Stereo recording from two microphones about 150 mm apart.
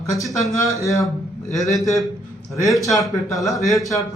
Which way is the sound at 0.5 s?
20° left (ahead or behind).